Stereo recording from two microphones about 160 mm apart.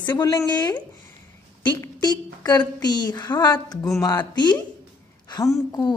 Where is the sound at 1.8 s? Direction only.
25° left (ahead or behind).